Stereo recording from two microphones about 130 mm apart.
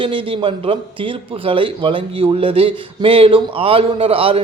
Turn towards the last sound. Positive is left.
turn(degrees=-45)  # may be behind; listen again after turning